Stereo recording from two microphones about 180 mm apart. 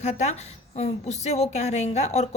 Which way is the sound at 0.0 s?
40° left (ahead or behind).